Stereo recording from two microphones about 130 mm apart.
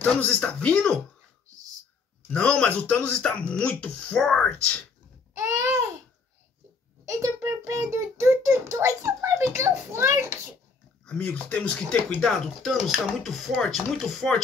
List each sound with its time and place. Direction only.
0.0 s speech: 10° left (ahead or behind)
2.3 s speech: 10° left (ahead or behind)
5.5 s babbling: 20° right (ahead or behind)
7.1 s a child's voice: 25° right (ahead or behind)
11.1 s speech: 10° left (ahead or behind)